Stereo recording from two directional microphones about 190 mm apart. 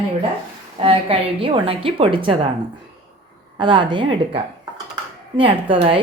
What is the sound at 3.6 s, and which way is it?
Speech, 25° right (ahead or behind).